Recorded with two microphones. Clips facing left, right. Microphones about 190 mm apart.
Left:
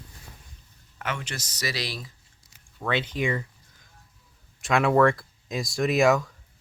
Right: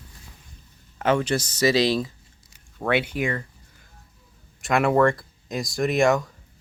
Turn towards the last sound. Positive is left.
turn(degrees=0)  # may be behind; listen again after turning